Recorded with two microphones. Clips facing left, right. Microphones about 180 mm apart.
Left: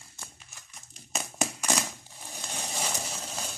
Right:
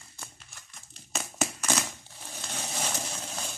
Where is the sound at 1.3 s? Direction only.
15° left (ahead or behind).